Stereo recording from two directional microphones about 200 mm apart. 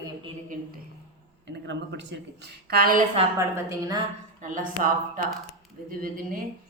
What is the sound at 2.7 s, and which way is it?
Speech, 45° right (ahead or behind).